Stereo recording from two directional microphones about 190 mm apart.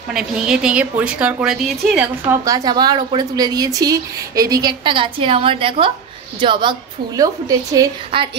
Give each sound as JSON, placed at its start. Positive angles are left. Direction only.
{"t": 0.1, "sound": "a woman's voice", "side_deg": -5}
{"t": 2.4, "sound": "a woman's voice", "side_deg": -20}